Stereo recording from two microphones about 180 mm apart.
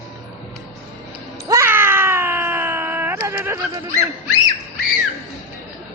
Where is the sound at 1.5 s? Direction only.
15° right (ahead or behind).